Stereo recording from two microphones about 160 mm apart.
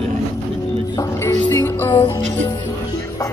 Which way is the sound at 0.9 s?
20° left (ahead or behind).